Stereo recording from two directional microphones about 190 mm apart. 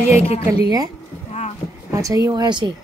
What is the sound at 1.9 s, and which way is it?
Speech, 15° right (ahead or behind).